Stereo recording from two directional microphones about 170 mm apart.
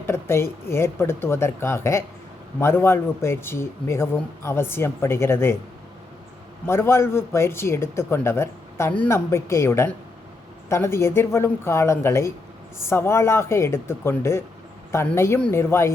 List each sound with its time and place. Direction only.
0.1 s speech: 15° left (ahead or behind)
6.7 s speech: 15° left (ahead or behind)